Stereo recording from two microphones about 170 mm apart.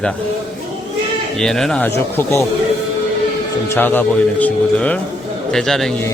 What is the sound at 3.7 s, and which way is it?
Speech, 10° left (ahead or behind).